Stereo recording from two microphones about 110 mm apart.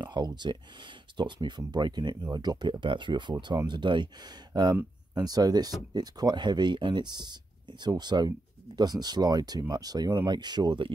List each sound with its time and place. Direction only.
0.0 s speech: 40° right (ahead or behind)